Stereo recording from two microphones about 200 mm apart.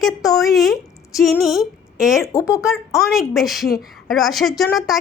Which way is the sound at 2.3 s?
15° left (ahead or behind).